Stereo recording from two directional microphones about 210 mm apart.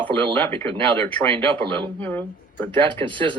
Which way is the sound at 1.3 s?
25° right (ahead or behind).